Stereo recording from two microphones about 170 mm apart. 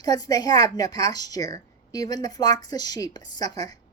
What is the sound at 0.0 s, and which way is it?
A woman's voice, 20° left (ahead or behind).